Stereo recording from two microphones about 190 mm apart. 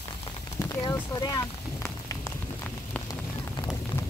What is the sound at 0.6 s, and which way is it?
Rain on surface, 15° left (ahead or behind).